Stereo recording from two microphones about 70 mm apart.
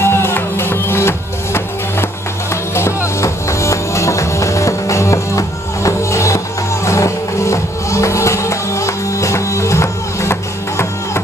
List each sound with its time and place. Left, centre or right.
0.0 s music: left